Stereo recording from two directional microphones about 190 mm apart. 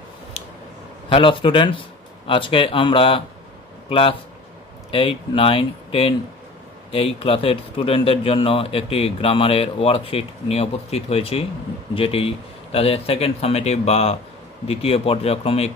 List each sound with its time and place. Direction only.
1.0 s speech: 25° left (ahead or behind)